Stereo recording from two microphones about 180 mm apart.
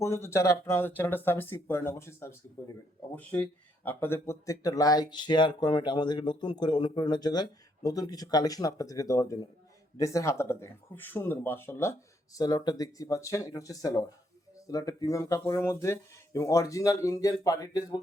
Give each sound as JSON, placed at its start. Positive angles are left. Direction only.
{"t": 0.0, "sound": "speech", "side_deg": 15}